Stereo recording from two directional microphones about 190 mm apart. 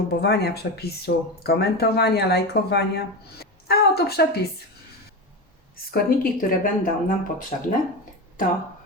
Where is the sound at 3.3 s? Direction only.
55° left (ahead or behind).